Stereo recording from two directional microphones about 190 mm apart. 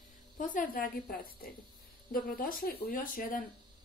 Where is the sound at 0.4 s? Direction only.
45° left (ahead or behind).